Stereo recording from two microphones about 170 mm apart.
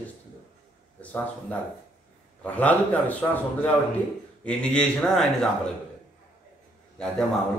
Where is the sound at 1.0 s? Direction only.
10° left (ahead or behind).